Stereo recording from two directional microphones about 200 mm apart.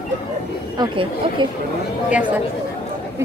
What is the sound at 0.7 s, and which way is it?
Speech, 20° right (ahead or behind).